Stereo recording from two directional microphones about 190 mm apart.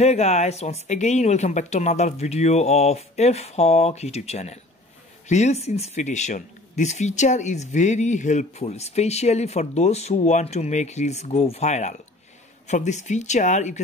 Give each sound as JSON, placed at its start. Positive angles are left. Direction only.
{"t": 0.0, "sound": "speech", "side_deg": 35}